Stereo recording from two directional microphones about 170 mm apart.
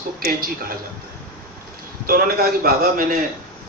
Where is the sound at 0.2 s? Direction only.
60° right (ahead or behind).